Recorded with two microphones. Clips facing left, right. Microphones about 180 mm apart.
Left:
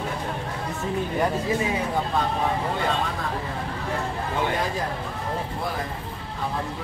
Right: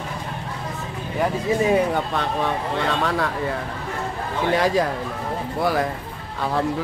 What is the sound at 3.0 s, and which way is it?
Speech, 80° right.